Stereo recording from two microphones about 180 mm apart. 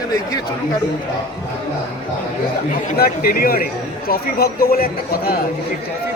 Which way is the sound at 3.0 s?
55° left (ahead or behind).